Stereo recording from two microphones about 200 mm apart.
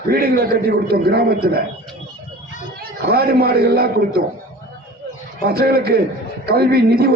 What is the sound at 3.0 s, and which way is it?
A man's voice, 50° right (ahead or behind).